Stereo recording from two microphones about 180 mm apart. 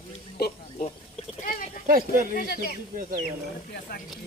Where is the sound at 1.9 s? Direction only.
50° right (ahead or behind).